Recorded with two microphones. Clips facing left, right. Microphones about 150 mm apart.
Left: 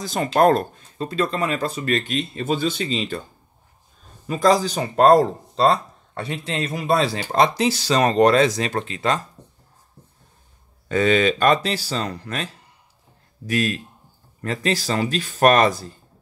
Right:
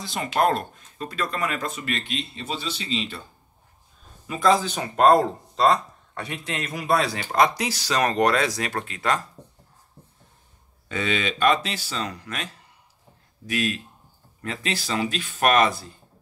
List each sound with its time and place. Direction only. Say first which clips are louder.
0.0 s speech: left 6 dB; 45° left (ahead or behind)
4.3 s speech: left 3 dB; 40° left (ahead or behind)
10.9 s speech: left 9 dB; 40° left (ahead or behind)
13.5 s speech: left 4 dB; 40° left (ahead or behind)